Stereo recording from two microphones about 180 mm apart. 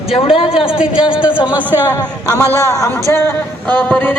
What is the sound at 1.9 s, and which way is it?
A man's voice, 20° left (ahead or behind).